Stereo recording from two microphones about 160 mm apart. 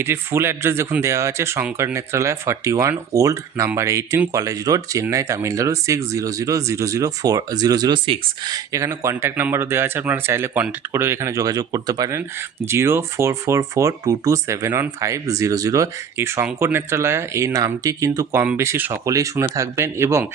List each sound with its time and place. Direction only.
0.0 s speech: 15° right (ahead or behind)